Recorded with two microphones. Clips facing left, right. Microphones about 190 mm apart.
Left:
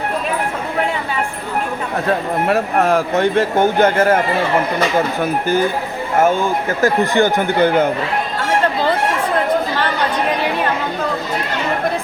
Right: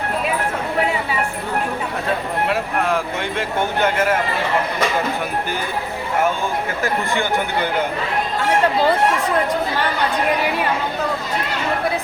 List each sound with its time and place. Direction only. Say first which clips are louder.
2.5 s a man's voice: left 7 dB; 45° left (ahead or behind)
6.8 s speech: left 9 dB; 40° left (ahead or behind)